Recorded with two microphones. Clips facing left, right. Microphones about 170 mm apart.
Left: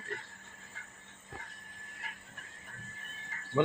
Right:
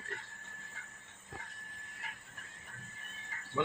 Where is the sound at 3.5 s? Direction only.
25° left (ahead or behind).